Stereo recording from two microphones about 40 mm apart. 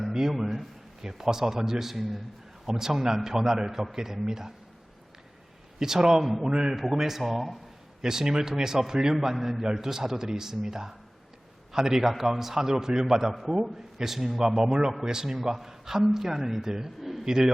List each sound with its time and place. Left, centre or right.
0.1 s a man's voice: centre
2.6 s a man's voice: centre
5.8 s a man's voice: centre
6.7 s speech: centre
8.0 s a man's voice: centre
17.0 s a sound: centre
17.2 s a man's voice: centre